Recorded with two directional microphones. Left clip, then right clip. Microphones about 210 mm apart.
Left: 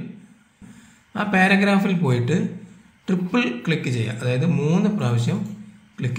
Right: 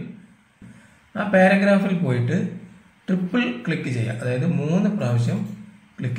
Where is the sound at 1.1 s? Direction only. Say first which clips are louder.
Right 2 dB; 45° left (ahead or behind).